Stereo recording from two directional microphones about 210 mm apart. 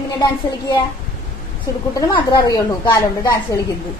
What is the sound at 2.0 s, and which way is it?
A woman's voice, 15° left (ahead or behind).